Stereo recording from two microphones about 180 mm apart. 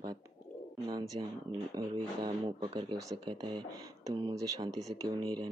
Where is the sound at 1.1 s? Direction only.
35° right (ahead or behind).